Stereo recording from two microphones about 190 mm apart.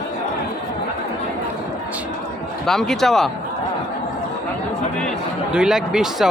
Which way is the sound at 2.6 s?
Centre (ahead or behind).